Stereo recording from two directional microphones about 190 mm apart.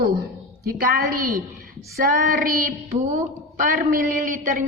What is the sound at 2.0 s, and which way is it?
A woman's voice, 45° right (ahead or behind).